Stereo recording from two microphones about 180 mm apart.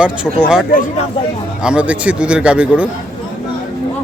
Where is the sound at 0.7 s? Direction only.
45° left (ahead or behind).